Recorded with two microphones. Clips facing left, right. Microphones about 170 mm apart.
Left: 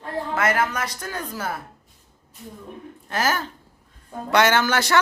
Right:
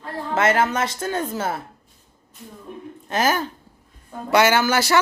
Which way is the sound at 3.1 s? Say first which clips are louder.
Right 3 dB; 20° right (ahead or behind).